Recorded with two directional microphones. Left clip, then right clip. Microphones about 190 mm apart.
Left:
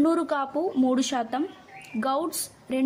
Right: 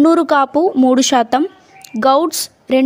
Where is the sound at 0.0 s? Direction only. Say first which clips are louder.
Right 13 dB; 50° right (ahead or behind).